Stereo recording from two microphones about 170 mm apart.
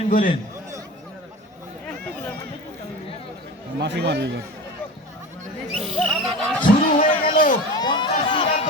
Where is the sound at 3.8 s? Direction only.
85° right.